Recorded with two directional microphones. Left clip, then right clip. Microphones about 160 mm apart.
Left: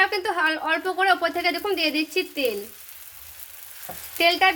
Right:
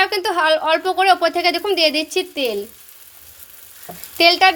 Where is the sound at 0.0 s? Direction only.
50° right (ahead or behind).